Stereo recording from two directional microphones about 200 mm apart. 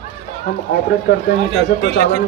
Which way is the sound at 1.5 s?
35° right (ahead or behind).